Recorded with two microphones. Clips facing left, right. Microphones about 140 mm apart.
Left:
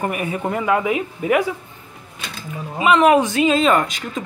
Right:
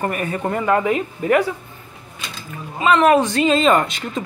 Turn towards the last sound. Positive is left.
turn(degrees=5)  # may be behind; listen again after turning